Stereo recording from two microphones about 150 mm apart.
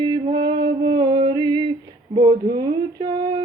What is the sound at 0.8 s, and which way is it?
Music, 30° right (ahead or behind).